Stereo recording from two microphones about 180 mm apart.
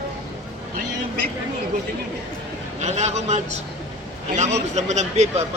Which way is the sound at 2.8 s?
40° right (ahead or behind).